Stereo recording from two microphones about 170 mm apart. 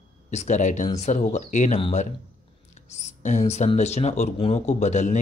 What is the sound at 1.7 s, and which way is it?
Speech, 30° left (ahead or behind).